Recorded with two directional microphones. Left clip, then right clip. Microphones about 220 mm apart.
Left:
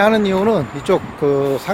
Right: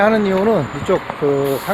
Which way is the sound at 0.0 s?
20° left (ahead or behind).